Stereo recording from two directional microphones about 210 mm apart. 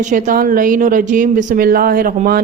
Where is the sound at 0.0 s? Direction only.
35° right (ahead or behind).